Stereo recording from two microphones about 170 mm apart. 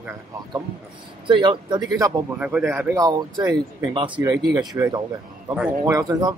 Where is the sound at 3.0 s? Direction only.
20° right (ahead or behind).